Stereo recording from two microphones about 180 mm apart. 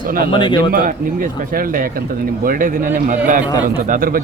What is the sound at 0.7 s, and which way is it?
Speech, 50° right (ahead or behind).